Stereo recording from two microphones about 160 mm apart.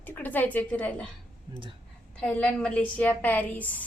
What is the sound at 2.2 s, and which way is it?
A woman's voice, 5° left (ahead or behind).